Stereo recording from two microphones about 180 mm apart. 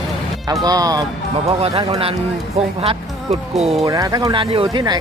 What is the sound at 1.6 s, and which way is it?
Speech, 35° right (ahead or behind).